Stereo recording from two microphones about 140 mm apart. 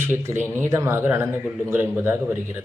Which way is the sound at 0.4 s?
15° right (ahead or behind).